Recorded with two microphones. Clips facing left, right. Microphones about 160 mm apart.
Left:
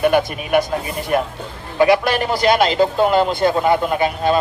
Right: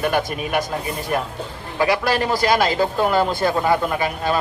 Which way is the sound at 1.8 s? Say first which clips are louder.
Left 4 dB; 20° left (ahead or behind).